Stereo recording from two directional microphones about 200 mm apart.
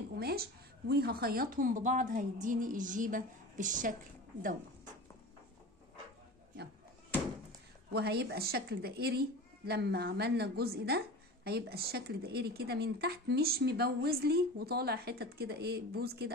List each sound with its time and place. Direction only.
0.2 s a woman's voice: 50° right (ahead or behind)
7.9 s speech: 55° right (ahead or behind)